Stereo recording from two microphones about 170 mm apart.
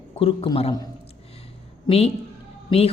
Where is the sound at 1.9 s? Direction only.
35° left (ahead or behind).